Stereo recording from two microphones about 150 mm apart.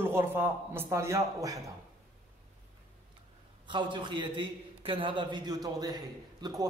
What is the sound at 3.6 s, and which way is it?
A man's voice, 35° right (ahead or behind).